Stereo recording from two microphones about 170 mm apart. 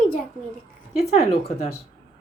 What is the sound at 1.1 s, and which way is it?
Speech, 40° left (ahead or behind).